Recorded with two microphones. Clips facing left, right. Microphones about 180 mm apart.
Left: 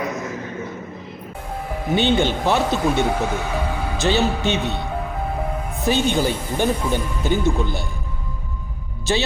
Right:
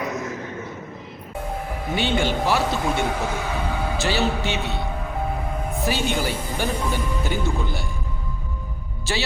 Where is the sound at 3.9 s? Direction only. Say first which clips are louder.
Left 5 dB; 20° left (ahead or behind).